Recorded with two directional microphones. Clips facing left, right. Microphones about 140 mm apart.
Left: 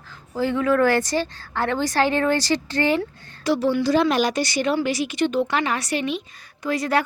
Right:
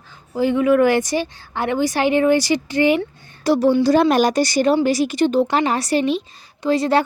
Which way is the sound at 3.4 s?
40° right (ahead or behind).